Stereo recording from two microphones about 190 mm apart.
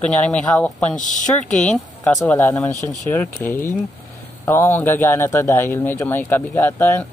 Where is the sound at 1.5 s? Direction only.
5° left (ahead or behind).